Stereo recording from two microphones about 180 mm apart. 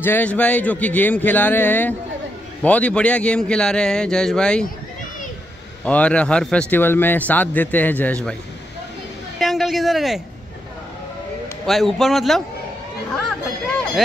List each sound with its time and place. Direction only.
0.0 s a man's voice: 10° left (ahead or behind)
5.9 s speech: 5° left (ahead or behind)
9.4 s speech: centre (ahead or behind)
11.6 s a man's voice: centre (ahead or behind)